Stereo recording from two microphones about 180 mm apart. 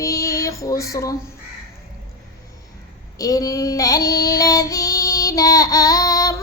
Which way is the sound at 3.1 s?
20° left (ahead or behind).